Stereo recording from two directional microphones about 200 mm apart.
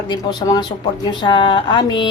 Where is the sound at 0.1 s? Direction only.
20° left (ahead or behind).